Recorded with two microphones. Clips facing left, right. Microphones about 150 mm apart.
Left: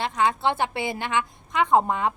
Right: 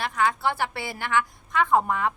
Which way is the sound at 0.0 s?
20° left (ahead or behind).